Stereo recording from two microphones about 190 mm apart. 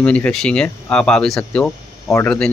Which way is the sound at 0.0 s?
5° left (ahead or behind).